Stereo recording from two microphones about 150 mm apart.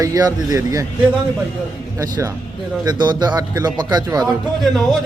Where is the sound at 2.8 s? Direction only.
30° right (ahead or behind).